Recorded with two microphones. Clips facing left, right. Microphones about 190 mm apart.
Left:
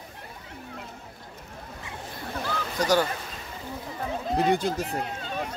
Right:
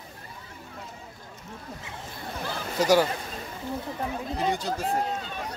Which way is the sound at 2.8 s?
10° right (ahead or behind).